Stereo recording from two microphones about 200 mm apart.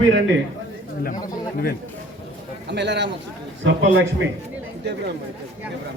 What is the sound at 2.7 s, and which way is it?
Speech, 60° right (ahead or behind).